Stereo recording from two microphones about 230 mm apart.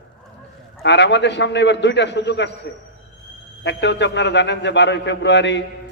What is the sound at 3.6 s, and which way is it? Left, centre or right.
A man's voice, left.